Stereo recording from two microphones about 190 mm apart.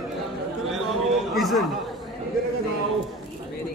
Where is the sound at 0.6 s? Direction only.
Centre (ahead or behind).